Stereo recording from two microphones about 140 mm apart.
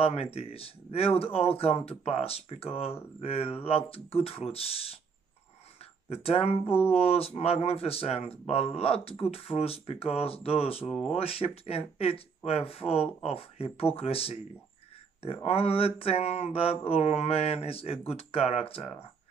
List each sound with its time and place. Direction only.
0.0 s speech: 45° left (ahead or behind)
6.2 s speech: 45° left (ahead or behind)
10.9 s speech: centre (ahead or behind)
11.1 s speech: 45° left (ahead or behind)